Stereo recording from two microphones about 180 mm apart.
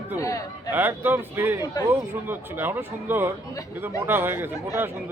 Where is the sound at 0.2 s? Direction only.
20° left (ahead or behind).